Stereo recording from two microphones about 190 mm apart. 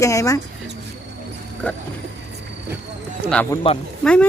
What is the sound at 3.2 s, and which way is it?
Speech, 10° left (ahead or behind).